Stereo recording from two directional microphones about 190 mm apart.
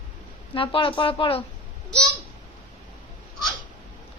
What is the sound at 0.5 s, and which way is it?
Speech, 25° left (ahead or behind).